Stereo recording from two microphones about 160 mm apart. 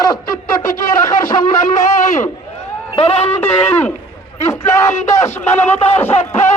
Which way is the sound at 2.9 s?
40° left (ahead or behind).